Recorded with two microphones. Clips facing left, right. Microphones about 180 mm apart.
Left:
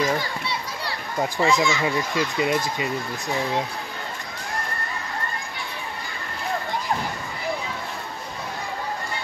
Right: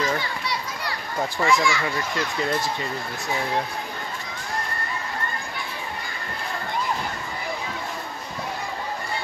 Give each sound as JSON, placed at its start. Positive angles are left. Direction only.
{"t": 0.0, "sound": "children playing", "side_deg": 25}
{"t": 1.4, "sound": "speech", "side_deg": 20}